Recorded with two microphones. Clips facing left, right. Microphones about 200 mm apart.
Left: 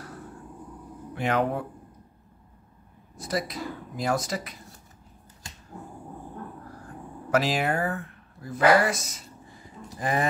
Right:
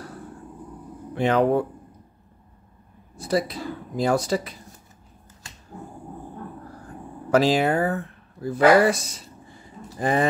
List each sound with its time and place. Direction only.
1.1 s speech: 30° right (ahead or behind)
3.2 s speech: 30° right (ahead or behind)
7.2 s speech: 30° right (ahead or behind)